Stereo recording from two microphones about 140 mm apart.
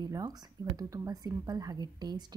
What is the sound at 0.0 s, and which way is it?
A woman's voice, 30° right (ahead or behind).